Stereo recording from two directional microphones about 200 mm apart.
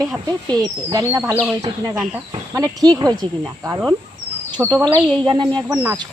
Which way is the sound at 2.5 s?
20° right (ahead or behind).